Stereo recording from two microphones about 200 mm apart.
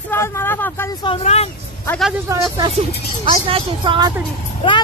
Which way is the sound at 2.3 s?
15° right (ahead or behind).